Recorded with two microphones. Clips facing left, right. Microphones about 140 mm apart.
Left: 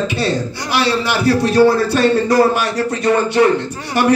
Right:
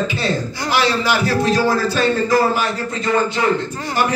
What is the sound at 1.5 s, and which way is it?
Speech, 65° left (ahead or behind).